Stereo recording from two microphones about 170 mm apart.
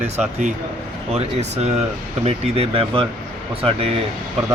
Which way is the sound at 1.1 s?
40° right (ahead or behind).